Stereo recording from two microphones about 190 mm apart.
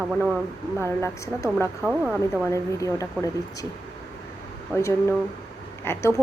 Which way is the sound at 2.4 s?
15° left (ahead or behind).